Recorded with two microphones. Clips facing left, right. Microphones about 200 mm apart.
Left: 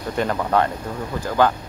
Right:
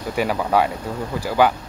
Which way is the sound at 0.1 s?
10° right (ahead or behind).